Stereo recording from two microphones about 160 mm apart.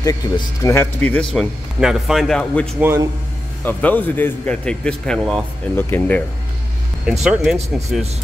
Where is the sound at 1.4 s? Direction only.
Centre (ahead or behind).